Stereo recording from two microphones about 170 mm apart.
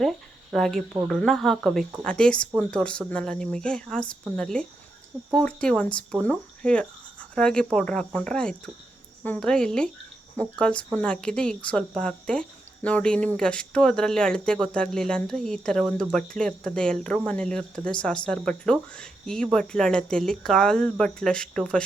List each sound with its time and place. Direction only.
0.0 s speech: centre (ahead or behind)